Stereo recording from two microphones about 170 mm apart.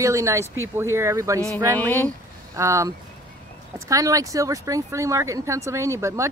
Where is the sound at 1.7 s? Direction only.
10° left (ahead or behind).